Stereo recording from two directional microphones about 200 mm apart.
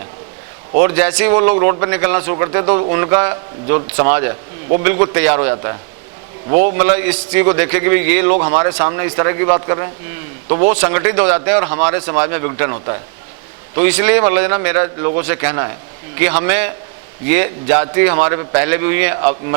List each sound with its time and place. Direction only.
0.8 s a man's voice: 15° right (ahead or behind)
1.3 s a man's voice: 25° right (ahead or behind)
6.7 s a man's voice: 15° right (ahead or behind)
10.8 s a man's voice: 15° right (ahead or behind)